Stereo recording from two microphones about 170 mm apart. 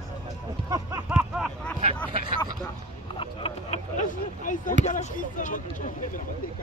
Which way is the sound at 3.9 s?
50° left (ahead or behind).